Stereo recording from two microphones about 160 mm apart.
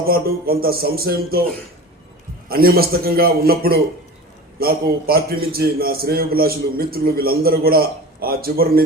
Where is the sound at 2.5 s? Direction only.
70° right (ahead or behind).